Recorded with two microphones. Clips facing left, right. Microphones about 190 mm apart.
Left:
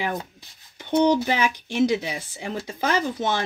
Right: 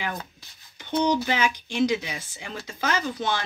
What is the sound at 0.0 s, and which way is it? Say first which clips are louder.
Speech: left 4 dB; 25° left (ahead or behind).